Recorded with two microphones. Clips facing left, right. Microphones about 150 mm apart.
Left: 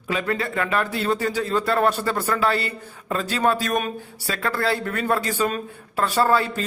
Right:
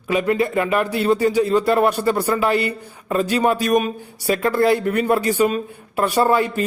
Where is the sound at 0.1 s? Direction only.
15° right (ahead or behind).